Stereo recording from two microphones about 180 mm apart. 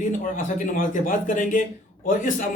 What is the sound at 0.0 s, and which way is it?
A man's voice, 50° left (ahead or behind).